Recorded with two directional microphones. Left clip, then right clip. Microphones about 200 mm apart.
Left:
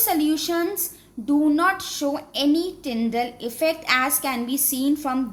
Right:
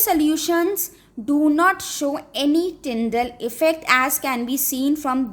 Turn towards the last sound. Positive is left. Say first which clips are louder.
# right 2 dB
turn(degrees=-55)  # may be behind; listen again after turning